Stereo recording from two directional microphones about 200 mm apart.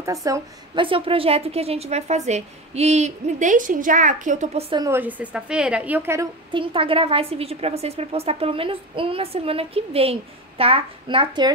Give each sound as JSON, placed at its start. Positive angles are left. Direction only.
{"t": 0.0, "sound": "a woman's voice", "side_deg": -15}
{"t": 4.8, "sound": "a woman's voice", "side_deg": -10}
{"t": 6.5, "sound": "a woman's voice", "side_deg": -25}